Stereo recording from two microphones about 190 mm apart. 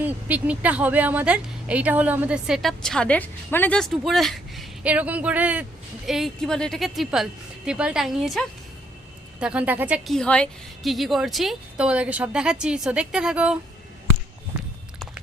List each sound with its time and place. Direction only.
0.0 s a woman's voice: 5° right (ahead or behind)
10.2 s a woman's voice: 5° left (ahead or behind)
14.5 s walk: 5° right (ahead or behind)